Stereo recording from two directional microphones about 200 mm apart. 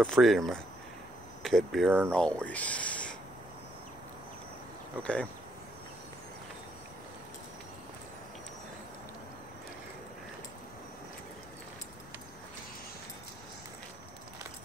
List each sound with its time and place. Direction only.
0.0 s speech: centre (ahead or behind)
2.4 s speech: 5° left (ahead or behind)
5.0 s speech: 5° left (ahead or behind)